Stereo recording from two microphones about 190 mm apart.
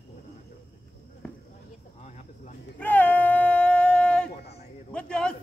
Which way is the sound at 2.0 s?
35° left (ahead or behind).